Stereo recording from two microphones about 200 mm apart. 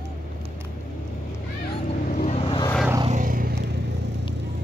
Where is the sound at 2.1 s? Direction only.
30° left (ahead or behind).